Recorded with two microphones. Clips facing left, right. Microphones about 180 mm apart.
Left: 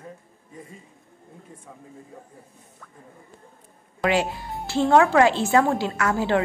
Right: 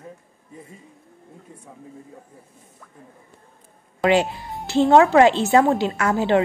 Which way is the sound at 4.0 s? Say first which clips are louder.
Right 4 dB; 25° right (ahead or behind).